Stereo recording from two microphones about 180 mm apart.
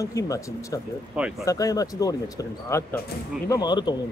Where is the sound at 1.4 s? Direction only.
20° left (ahead or behind).